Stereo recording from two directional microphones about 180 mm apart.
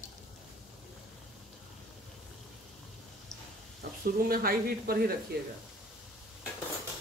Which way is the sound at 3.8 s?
60° right (ahead or behind).